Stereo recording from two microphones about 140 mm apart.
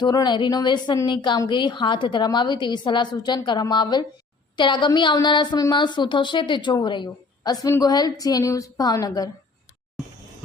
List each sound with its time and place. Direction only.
0.0 s a woman's voice: 30° left (ahead or behind)